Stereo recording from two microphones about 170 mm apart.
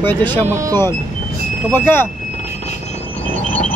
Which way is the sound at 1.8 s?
15° left (ahead or behind).